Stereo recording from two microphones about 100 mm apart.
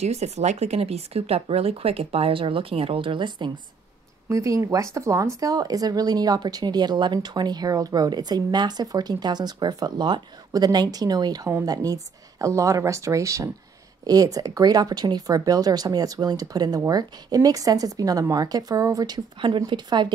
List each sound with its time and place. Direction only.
0.0 s speech: 90° right; by 3.5 s 50° right (ahead or behind)
4.3 s speech: 30° right (ahead or behind)
19.4 s speech: 55° right (ahead or behind)